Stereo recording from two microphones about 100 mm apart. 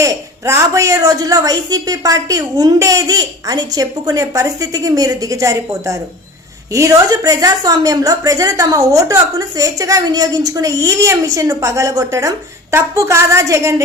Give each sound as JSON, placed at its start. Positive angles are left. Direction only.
{"t": 0.0, "sound": "a woman's voice", "side_deg": -30}